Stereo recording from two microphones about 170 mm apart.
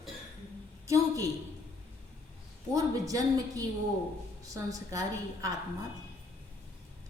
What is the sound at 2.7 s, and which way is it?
Speech, 20° right (ahead or behind).